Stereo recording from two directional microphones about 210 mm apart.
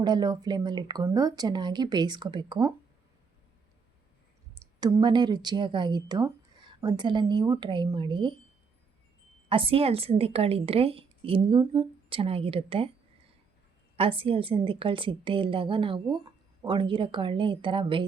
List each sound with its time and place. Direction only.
0.0 s a woman's voice: 20° right (ahead or behind)
4.6 s a woman's voice: 20° right (ahead or behind)
9.5 s a woman's voice: 25° right (ahead or behind)
13.9 s a woman's voice: 25° right (ahead or behind)